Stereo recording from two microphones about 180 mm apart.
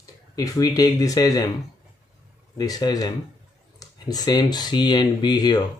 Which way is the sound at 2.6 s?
20° left (ahead or behind).